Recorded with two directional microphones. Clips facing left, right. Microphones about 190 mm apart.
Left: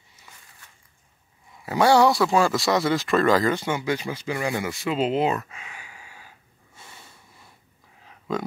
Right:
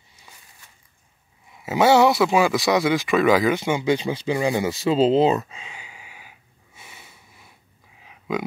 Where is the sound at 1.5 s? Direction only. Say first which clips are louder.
Right 2 dB; 20° right (ahead or behind).